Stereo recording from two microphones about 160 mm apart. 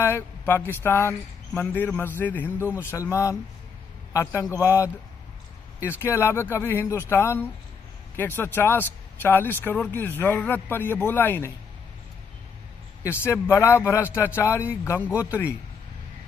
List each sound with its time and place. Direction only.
0.0 s a man's voice: 15° left (ahead or behind)
13.0 s speech: 15° left (ahead or behind)